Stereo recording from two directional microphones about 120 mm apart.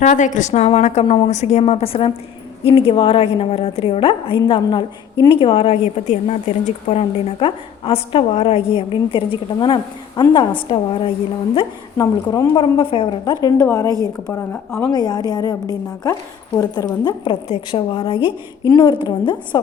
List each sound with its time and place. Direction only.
0.0 s a woman's voice: 90° left; by 1.0 s 70° left (ahead or behind)
1.0 s a woman's voice: 45° left (ahead or behind)
1.3 s a woman's voice: 65° left (ahead or behind)
1.6 s a woman's voice: 50° left (ahead or behind)
6.1 s a woman's voice: 70° left (ahead or behind); by 11.1 s 50° left (ahead or behind)
11.9 s speech: 25° left (ahead or behind)
12.5 s a woman's voice: 45° left (ahead or behind)
13.4 s speech: 30° left (ahead or behind)
14.9 s a woman's voice: 35° left (ahead or behind)